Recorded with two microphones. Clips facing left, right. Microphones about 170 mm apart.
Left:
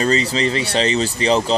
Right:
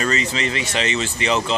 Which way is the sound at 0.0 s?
35° left (ahead or behind).